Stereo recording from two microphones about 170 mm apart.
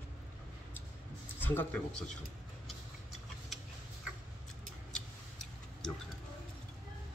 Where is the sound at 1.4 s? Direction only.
10° left (ahead or behind).